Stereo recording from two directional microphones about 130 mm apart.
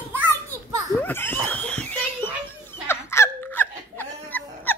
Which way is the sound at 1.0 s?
15° left (ahead or behind).